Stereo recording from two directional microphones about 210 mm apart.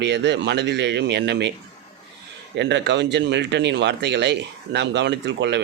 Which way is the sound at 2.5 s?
55° right (ahead or behind).